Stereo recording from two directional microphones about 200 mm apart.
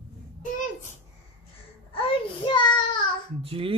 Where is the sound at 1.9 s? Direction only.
25° left (ahead or behind).